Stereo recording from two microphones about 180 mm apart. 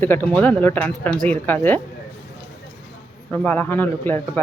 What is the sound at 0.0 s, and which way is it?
Speech, 10° left (ahead or behind).